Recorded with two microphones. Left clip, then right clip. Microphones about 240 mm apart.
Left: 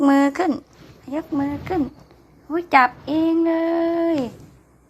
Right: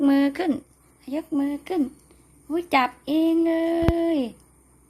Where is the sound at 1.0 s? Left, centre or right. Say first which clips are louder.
Left 2 dB; centre.